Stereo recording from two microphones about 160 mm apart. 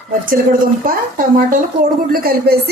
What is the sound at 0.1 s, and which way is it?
A woman's voice, 60° right (ahead or behind).